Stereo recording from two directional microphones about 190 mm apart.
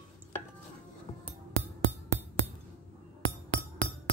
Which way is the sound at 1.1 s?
30° left (ahead or behind).